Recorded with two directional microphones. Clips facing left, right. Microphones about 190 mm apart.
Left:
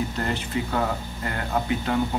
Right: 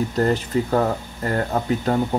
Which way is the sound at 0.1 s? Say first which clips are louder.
Right 7 dB; 40° right (ahead or behind).